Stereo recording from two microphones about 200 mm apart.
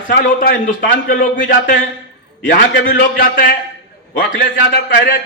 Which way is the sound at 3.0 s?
45° left (ahead or behind).